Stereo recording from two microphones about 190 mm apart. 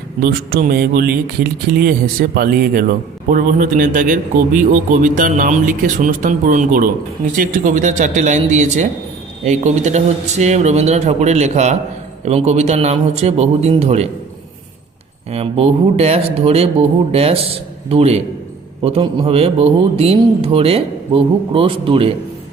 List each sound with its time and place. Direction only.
0.2 s a man's voice: 50° right (ahead or behind); by 14.1 s 35° right (ahead or behind)
15.3 s a man's voice: 30° right (ahead or behind)